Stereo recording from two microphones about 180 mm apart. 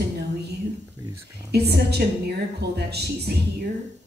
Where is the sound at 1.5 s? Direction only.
65° right (ahead or behind).